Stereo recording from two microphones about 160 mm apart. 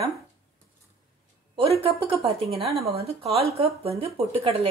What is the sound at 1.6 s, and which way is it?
Speech, 35° right (ahead or behind).